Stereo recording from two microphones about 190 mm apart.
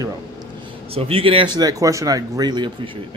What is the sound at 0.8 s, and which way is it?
A man's voice, 30° right (ahead or behind).